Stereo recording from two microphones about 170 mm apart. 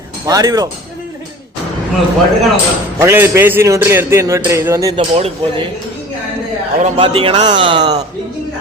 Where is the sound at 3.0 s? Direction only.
15° right (ahead or behind).